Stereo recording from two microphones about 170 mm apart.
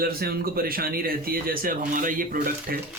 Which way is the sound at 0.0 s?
65° right (ahead or behind).